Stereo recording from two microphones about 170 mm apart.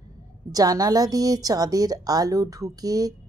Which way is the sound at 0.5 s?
20° right (ahead or behind).